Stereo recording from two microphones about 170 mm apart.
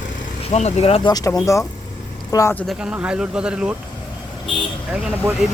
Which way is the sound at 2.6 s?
5° right (ahead or behind).